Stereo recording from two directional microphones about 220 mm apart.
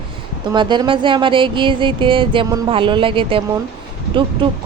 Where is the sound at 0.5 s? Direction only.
20° right (ahead or behind).